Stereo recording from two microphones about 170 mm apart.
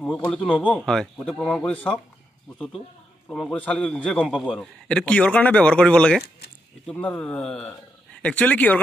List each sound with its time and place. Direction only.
0.0 s a man's voice: 5° left (ahead or behind)
3.3 s a man's voice: 5° left (ahead or behind)